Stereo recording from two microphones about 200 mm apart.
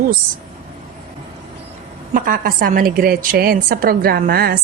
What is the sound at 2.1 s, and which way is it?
A woman's voice, 45° right (ahead or behind).